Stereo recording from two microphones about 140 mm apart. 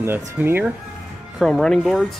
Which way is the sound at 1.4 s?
Centre (ahead or behind).